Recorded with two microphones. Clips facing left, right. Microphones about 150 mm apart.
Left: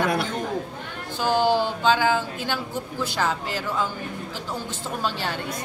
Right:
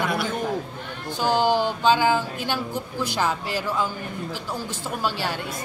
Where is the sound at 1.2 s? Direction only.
15° right (ahead or behind).